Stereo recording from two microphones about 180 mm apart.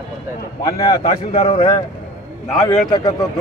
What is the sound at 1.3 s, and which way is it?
Speech, 30° left (ahead or behind).